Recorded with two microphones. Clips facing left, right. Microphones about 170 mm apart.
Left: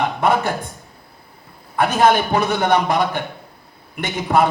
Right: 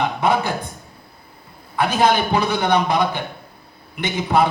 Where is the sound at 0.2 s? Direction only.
50° left (ahead or behind).